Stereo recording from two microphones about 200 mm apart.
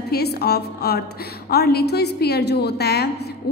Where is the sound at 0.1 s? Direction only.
55° left (ahead or behind).